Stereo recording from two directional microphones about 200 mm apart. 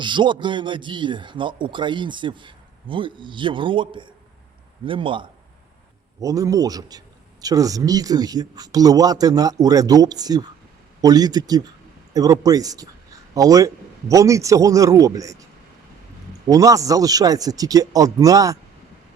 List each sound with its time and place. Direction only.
0.0 s a man's voice: 25° right (ahead or behind)
16.5 s speech: 15° right (ahead or behind)